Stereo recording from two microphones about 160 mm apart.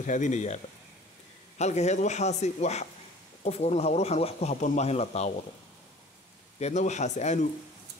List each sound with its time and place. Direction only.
0.0 s speech: 50° left (ahead or behind)
1.6 s speech: 45° left (ahead or behind)
6.6 s speech: 45° left (ahead or behind)